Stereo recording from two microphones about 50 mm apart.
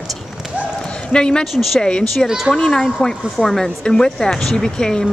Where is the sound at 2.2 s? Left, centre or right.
Centre.